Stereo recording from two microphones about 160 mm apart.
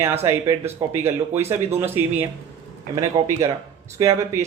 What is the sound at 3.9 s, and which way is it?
Speech, 20° right (ahead or behind).